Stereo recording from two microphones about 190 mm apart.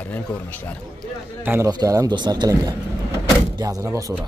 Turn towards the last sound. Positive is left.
turn(degrees=-15)  # may be behind; listen again after turning